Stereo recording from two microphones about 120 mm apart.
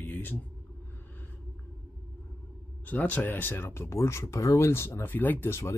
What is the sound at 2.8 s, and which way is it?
Speech, 15° left (ahead or behind).